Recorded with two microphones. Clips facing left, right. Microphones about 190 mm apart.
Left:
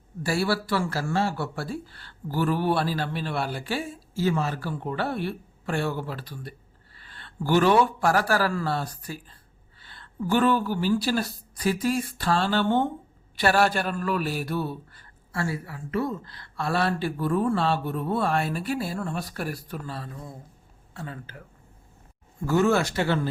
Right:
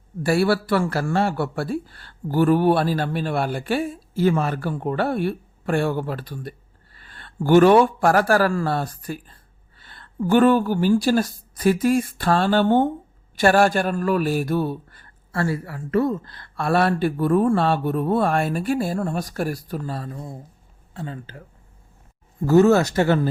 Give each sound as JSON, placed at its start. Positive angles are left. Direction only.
{"t": 0.2, "sound": "a man's voice", "side_deg": -55}
{"t": 20.9, "sound": "speech", "side_deg": -30}
{"t": 22.4, "sound": "speech", "side_deg": -40}